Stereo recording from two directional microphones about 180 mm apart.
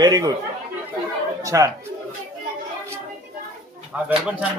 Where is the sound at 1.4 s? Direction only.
20° right (ahead or behind).